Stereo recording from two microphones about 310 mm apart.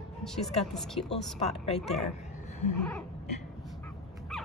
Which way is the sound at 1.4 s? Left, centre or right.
Left.